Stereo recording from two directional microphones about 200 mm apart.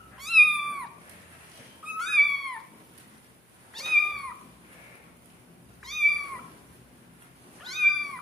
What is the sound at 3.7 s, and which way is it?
Cat, centre (ahead or behind).